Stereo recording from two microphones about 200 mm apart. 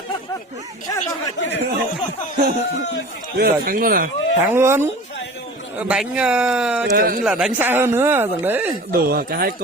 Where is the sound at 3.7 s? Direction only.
45° right (ahead or behind).